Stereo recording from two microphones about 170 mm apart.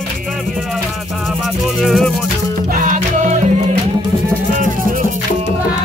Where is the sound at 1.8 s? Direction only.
Centre (ahead or behind).